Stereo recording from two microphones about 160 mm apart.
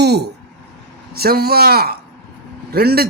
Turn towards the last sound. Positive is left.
turn(degrees=-75)  # may be behind; listen again after turning